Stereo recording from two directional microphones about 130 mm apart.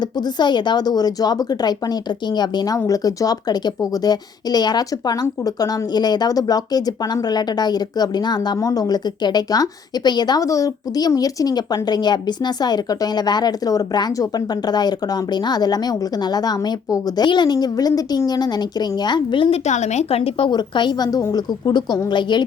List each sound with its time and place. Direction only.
0.3 s a woman's voice: 35° left (ahead or behind)
19.6 s a woman's voice: 60° left (ahead or behind)
20.5 s a woman's voice: 35° left (ahead or behind)